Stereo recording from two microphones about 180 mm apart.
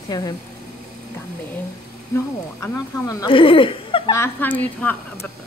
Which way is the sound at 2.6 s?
15° left (ahead or behind).